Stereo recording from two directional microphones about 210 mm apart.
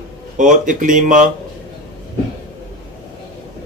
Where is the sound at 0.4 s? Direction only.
40° right (ahead or behind).